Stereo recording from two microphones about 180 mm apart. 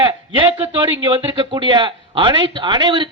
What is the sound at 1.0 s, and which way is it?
Speech, 30° right (ahead or behind).